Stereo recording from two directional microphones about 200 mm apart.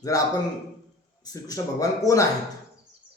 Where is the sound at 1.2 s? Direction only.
15° left (ahead or behind).